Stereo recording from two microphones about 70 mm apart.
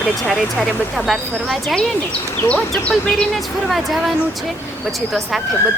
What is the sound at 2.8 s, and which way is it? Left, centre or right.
Speech, centre.